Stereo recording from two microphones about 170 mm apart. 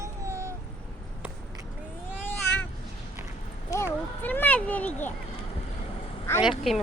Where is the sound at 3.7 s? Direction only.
15° left (ahead or behind).